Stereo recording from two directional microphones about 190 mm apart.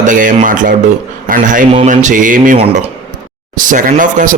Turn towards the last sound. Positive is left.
turn(degrees=-45)  # may be behind; listen again after turning